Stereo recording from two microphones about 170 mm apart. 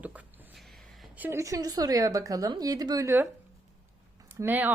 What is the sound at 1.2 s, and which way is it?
A woman's voice, 15° right (ahead or behind).